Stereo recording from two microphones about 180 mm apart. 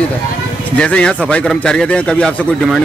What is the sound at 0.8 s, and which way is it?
A man's voice, 5° left (ahead or behind).